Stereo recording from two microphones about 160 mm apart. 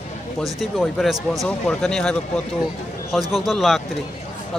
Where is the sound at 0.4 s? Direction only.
Centre (ahead or behind).